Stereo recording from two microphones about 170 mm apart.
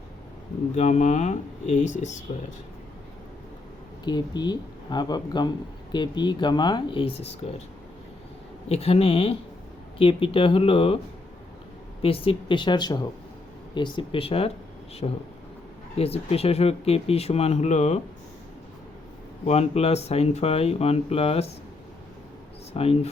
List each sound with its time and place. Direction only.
0.8 s speech: 40° left (ahead or behind)
4.0 s speech: 25° left (ahead or behind)
8.7 s speech: 35° left (ahead or behind)
12.0 s speech: 35° left (ahead or behind)
19.5 s speech: 40° left (ahead or behind)
22.7 s speech: 35° left (ahead or behind)